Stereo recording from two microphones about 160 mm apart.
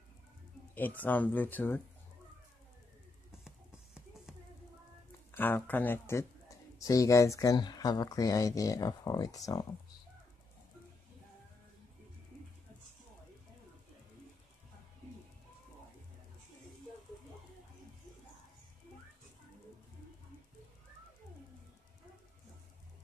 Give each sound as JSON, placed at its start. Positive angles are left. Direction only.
{"t": 0.7, "sound": "speech", "side_deg": 10}
{"t": 3.3, "sound": "clip-clop", "side_deg": -5}
{"t": 5.3, "sound": "speech", "side_deg": 10}